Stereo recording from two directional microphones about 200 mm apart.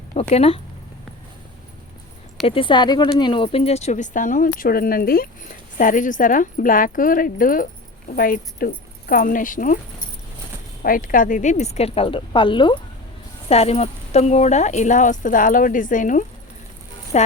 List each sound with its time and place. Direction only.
0.1 s speech: 35° left (ahead or behind)
2.5 s speech: 25° left (ahead or behind); by 9.7 s 40° left (ahead or behind)
10.8 s speech: 45° left (ahead or behind)